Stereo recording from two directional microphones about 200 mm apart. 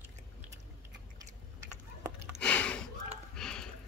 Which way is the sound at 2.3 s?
5° left (ahead or behind).